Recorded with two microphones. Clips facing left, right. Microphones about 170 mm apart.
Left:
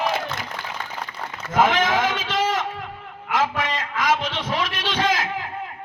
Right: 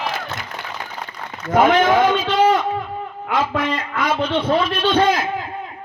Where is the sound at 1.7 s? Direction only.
90° left.